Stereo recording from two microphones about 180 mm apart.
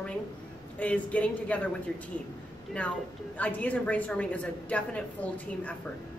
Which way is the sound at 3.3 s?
10° left (ahead or behind).